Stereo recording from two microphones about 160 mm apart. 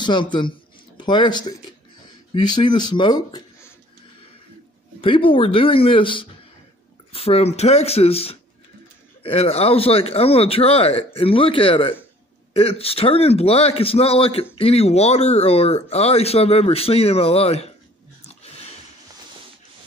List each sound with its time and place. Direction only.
0.0 s speech: 30° left (ahead or behind)
5.0 s a man's voice: 35° left (ahead or behind)
18.2 s a sound: 40° left (ahead or behind)